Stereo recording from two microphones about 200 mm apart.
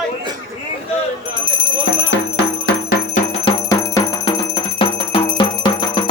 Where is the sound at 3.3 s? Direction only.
25° left (ahead or behind).